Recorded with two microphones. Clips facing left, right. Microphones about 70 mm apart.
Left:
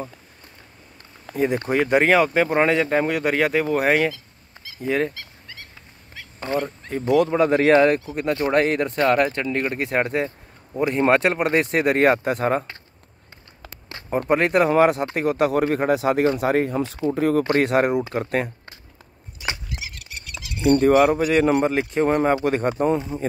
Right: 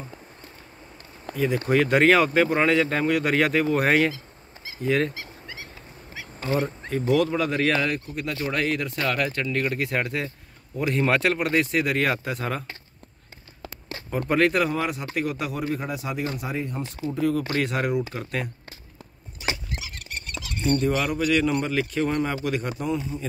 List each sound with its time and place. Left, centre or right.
1.3 s speech: left
1.7 s speech: centre
5.1 s fowl: centre
6.1 s duck: centre
6.9 s speech: centre; by 12.6 s left
14.1 s speech: left
14.7 s speech: left
15.1 s speech: left
15.5 s a man's voice: left
17.1 s speech: left
19.7 s a sound: right
20.8 s speech: left